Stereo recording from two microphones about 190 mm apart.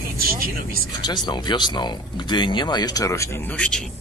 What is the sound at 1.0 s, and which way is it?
Speech, 25° left (ahead or behind).